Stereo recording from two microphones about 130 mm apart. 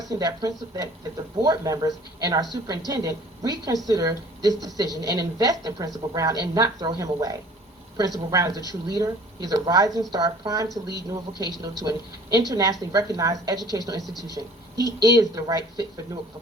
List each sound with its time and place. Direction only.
0.0 s a woman's voice: 25° right (ahead or behind)
14.0 s speech: centre (ahead or behind)
14.3 s speech: 30° left (ahead or behind)
15.0 s a woman's voice: 25° right (ahead or behind)